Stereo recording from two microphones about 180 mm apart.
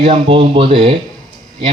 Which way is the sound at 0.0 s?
30° right (ahead or behind).